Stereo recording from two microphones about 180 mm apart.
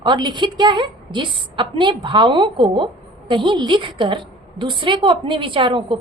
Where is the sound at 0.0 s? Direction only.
25° right (ahead or behind).